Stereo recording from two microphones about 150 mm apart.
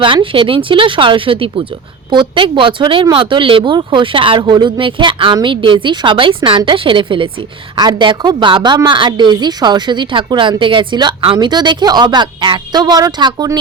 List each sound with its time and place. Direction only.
0.0 s a woman's voice: 35° right (ahead or behind)